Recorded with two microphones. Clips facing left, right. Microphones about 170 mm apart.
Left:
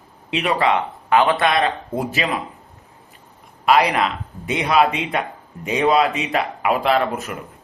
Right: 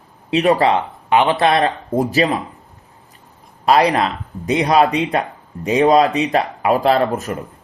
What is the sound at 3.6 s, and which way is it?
Speech, 35° right (ahead or behind).